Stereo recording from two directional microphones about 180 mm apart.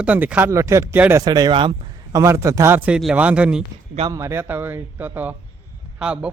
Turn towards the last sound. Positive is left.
turn(degrees=-5)  # may be behind; listen again after turning